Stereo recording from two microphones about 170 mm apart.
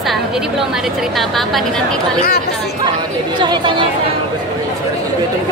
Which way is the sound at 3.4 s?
25° right (ahead or behind).